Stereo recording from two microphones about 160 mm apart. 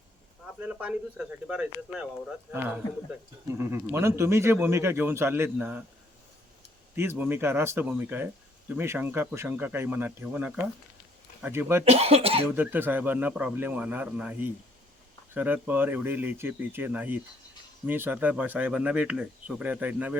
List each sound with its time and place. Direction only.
0.4 s speech: 5° right (ahead or behind)
6.9 s speech: 15° right (ahead or behind)
11.9 s speech: 40° right (ahead or behind)
12.5 s speech: 10° right (ahead or behind)